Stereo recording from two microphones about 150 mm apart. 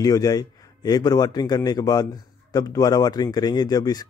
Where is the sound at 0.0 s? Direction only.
25° left (ahead or behind).